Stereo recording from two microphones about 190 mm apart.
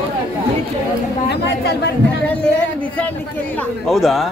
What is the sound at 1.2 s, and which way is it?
Speech, 60° left (ahead or behind).